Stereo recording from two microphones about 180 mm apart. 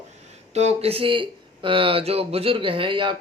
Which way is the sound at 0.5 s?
35° right (ahead or behind).